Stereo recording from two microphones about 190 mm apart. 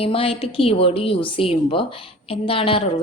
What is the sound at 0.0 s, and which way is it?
A woman's voice, 30° left (ahead or behind).